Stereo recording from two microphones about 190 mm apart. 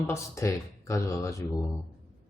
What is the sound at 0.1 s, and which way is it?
Speech, 15° left (ahead or behind).